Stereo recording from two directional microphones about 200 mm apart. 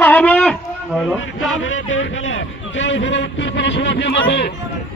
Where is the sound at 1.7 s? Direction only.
75° left (ahead or behind); by 4.5 s 55° left (ahead or behind).